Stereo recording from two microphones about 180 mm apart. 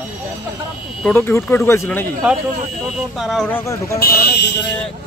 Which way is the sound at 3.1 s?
Centre (ahead or behind).